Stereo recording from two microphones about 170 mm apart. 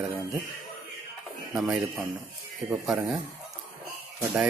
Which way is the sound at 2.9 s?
Centre (ahead or behind).